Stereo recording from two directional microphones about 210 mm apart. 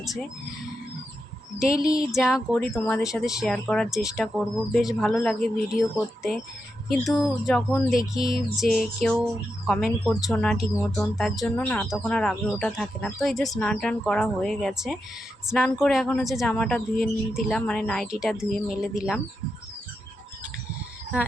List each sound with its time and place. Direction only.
0.0 s speech: centre (ahead or behind)
1.5 s speech: 5° right (ahead or behind)
6.9 s speech: centre (ahead or behind)